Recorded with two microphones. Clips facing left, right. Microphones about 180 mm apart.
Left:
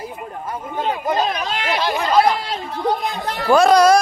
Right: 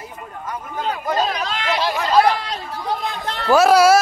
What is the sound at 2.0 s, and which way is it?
Chatter, 25° left (ahead or behind).